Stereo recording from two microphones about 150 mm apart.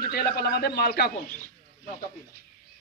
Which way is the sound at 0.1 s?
90° left.